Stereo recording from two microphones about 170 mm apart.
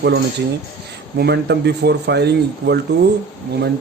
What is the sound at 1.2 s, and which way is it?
Speech, 80° right.